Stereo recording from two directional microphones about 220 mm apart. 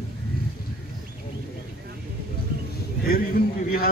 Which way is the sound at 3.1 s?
40° left (ahead or behind).